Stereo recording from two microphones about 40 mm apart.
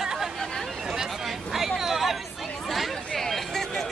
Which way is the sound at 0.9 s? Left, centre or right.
Centre.